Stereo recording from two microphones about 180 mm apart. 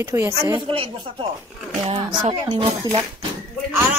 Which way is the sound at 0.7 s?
30° right (ahead or behind).